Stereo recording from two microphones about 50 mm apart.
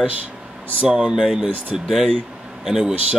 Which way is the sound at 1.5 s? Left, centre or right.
Right.